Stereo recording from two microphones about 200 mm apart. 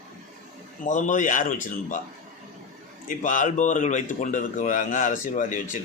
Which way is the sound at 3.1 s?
40° left (ahead or behind).